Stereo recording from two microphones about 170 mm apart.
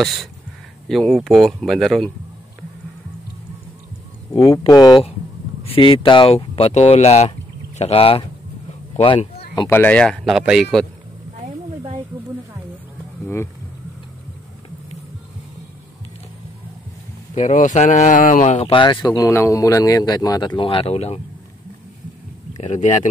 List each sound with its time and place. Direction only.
0.0 s speech: centre (ahead or behind)
4.6 s speech: 25° left (ahead or behind)
9.7 s speech: 10° left (ahead or behind)
17.4 s speech: 45° left (ahead or behind)
18.7 s speech: 25° left (ahead or behind)
22.6 s speech: 45° left (ahead or behind)